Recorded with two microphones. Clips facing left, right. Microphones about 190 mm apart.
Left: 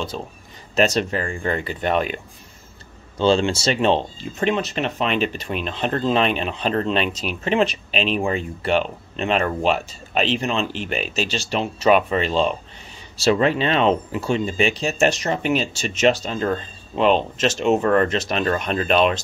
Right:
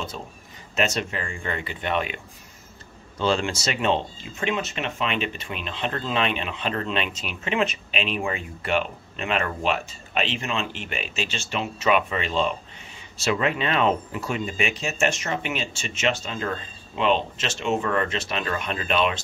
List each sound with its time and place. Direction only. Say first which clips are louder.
0.7 s speech: left 6 dB; 35° left (ahead or behind)
3.2 s speech: left 6 dB; 30° left (ahead or behind)